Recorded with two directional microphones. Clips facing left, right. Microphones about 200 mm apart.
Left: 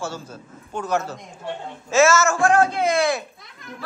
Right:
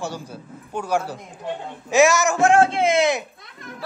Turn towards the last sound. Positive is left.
turn(degrees=-20)  # may be behind; listen again after turning